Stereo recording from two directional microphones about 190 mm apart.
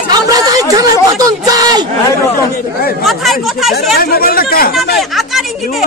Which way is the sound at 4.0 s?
55° left (ahead or behind).